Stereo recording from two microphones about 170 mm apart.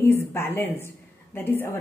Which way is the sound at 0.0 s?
15° left (ahead or behind).